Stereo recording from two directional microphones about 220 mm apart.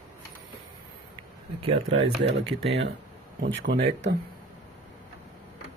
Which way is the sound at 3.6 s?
45° right (ahead or behind).